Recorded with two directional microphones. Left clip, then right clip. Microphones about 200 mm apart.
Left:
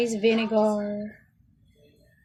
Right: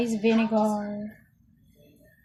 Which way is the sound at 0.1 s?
40° left (ahead or behind).